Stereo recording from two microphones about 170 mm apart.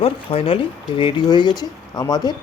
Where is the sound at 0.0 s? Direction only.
35° left (ahead or behind).